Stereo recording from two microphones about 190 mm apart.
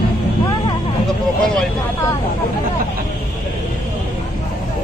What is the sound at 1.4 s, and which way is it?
Vehicle, centre (ahead or behind).